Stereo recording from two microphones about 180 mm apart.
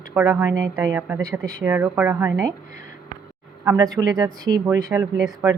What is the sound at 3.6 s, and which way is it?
Speech, 15° right (ahead or behind).